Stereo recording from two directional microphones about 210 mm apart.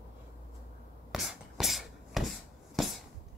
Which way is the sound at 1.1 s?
Centre (ahead or behind).